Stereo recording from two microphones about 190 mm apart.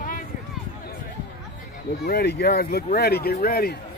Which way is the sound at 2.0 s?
60° left (ahead or behind).